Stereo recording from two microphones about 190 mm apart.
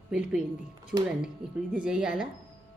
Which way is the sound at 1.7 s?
5° right (ahead or behind).